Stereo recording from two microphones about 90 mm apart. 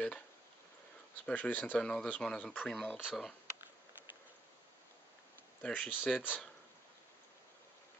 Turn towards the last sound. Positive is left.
turn(degrees=15)  # may be behind; listen again after turning